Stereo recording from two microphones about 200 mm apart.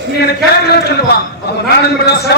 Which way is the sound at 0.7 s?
55° left (ahead or behind).